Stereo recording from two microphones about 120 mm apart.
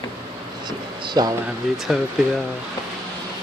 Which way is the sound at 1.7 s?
Centre (ahead or behind).